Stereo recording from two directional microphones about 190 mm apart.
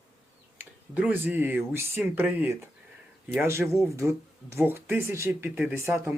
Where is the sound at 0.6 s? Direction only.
10° right (ahead or behind).